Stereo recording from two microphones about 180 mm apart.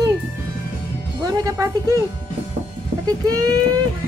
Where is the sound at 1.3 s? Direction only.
20° right (ahead or behind).